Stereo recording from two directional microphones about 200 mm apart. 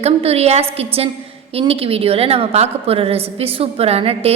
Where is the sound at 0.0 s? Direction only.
30° right (ahead or behind).